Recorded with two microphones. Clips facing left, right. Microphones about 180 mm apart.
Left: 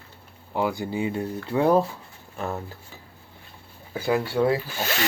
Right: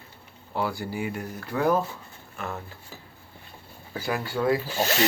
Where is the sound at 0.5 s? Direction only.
15° left (ahead or behind).